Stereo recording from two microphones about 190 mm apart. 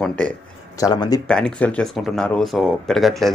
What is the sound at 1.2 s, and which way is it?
Speech, 5° left (ahead or behind).